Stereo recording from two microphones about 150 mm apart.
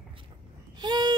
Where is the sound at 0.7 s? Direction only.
30° right (ahead or behind).